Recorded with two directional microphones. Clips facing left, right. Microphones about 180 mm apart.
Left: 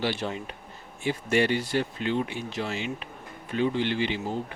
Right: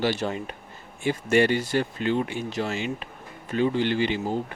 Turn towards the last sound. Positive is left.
turn(degrees=-45)  # may be behind; listen again after turning